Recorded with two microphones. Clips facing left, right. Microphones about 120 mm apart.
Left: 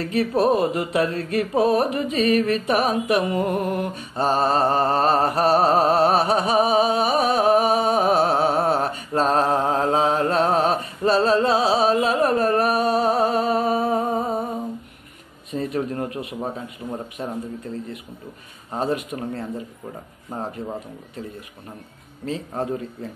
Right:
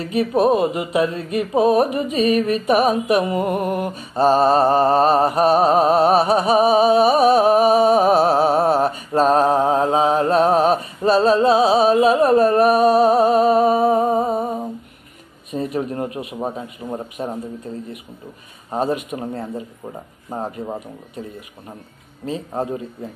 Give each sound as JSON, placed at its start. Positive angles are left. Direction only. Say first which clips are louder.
{"t": 0.0, "sound": "speech", "louder": "right 3 dB", "side_deg": -25}
{"t": 2.1, "sound": "music", "louder": "right 2 dB", "side_deg": -25}
{"t": 15.5, "sound": "speech", "louder": "right 2 dB", "side_deg": -25}
{"t": 18.7, "sound": "speech", "louder": "right 3 dB", "side_deg": -20}
{"t": 22.2, "sound": "speech", "louder": "right 2 dB", "side_deg": -20}